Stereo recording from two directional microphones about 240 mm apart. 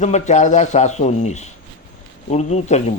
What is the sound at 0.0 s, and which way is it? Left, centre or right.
Speech, left.